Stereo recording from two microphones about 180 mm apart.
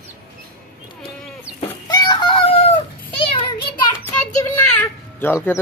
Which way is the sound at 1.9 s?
20° left (ahead or behind).